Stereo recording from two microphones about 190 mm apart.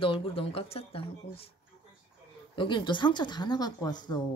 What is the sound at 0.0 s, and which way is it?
Speech, 30° left (ahead or behind).